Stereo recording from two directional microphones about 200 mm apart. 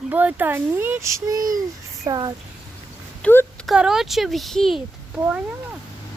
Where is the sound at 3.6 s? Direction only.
5° right (ahead or behind).